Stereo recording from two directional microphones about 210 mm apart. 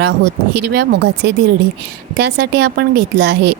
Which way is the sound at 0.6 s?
50° right (ahead or behind).